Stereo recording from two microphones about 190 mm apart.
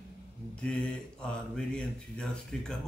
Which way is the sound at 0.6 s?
5° left (ahead or behind).